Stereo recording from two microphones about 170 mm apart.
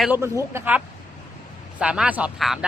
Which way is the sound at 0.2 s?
15° right (ahead or behind).